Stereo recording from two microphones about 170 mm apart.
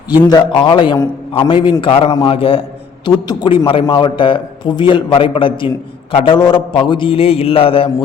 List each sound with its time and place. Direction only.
0.3 s a man's voice: 25° left (ahead or behind)